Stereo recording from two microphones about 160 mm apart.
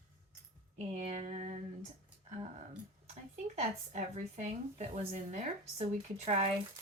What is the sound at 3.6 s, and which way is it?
Speech, 45° right (ahead or behind).